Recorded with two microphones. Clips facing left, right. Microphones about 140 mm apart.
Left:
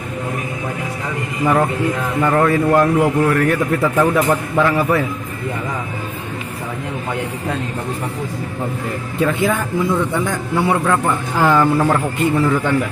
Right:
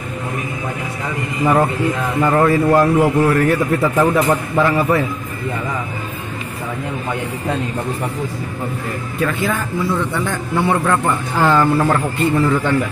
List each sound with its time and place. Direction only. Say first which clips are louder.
1.4 s a man's voice: right 1 dB; 10° right (ahead or behind)
9.2 s a man's voice: left 3 dB; 20° left (ahead or behind); by 12.7 s 5° left (ahead or behind)